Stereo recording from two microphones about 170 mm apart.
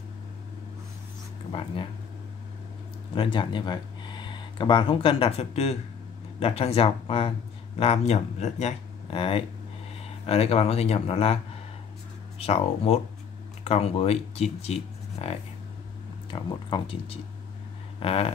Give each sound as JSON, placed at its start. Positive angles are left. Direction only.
{"t": 1.5, "sound": "speech", "side_deg": 30}
{"t": 3.2, "sound": "speech", "side_deg": 30}
{"t": 12.4, "sound": "speech", "side_deg": 35}